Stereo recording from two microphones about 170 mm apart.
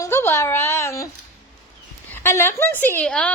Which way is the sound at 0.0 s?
15° left (ahead or behind).